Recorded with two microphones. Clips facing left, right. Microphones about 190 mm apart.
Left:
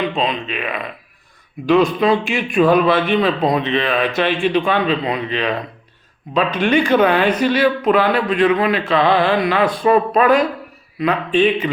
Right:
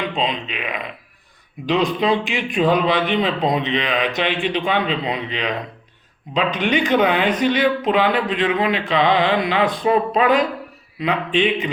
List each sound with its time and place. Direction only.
0.2 s a man's voice: 15° right (ahead or behind)
1.6 s a man's voice: 20° right (ahead or behind)